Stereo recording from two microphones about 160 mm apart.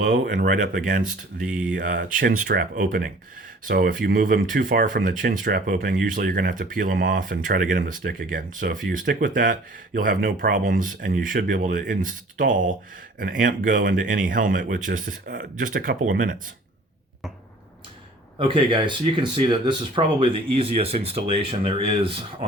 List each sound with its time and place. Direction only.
0.0 s speech: 50° right (ahead or behind)
1.4 s speech: 5° right (ahead or behind)
1.7 s speech: 60° right (ahead or behind)
18.3 s speech: 30° right (ahead or behind)